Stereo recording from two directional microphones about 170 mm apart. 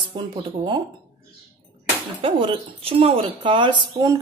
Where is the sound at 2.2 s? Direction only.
30° right (ahead or behind).